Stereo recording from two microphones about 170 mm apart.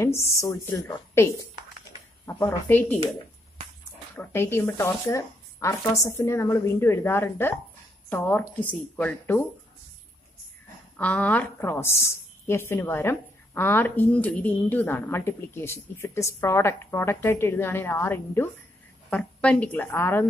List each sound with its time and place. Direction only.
0.0 s a woman's voice: 15° left (ahead or behind)
4.2 s a woman's voice: 15° left (ahead or behind)
11.0 s a woman's voice: 10° left (ahead or behind)